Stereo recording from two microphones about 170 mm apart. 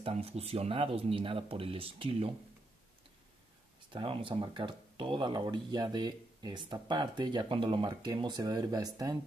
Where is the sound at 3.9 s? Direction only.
30° right (ahead or behind).